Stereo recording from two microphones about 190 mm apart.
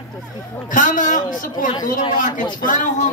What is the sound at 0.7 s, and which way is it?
Speech, 45° left (ahead or behind).